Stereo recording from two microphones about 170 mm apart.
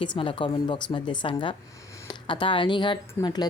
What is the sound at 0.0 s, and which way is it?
Speech, 30° left (ahead or behind).